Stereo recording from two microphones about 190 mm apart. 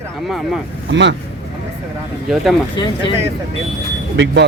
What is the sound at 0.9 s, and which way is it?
Speech, 70° right (ahead or behind).